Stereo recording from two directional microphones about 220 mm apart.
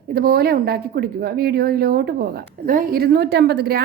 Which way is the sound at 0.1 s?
45° right (ahead or behind).